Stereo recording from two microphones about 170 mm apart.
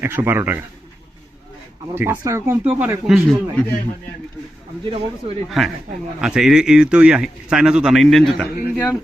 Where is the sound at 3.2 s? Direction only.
10° left (ahead or behind).